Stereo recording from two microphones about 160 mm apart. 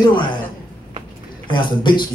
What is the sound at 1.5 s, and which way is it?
Speech, 30° left (ahead or behind).